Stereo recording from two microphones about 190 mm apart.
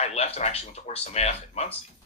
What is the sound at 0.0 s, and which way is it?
Speech, 35° left (ahead or behind).